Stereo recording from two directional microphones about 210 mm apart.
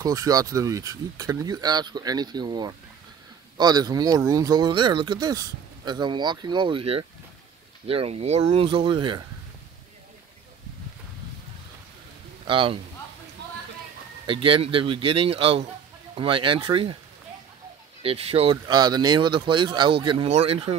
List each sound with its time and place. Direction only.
0.0 s speech: 15° right (ahead or behind)
12.4 s a man's voice: 25° right (ahead or behind)
14.2 s speech: 25° right (ahead or behind)
18.0 s speech: 30° right (ahead or behind)